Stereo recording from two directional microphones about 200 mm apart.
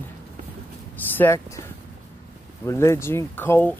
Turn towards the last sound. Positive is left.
turn(degrees=10)  # may be behind; listen again after turning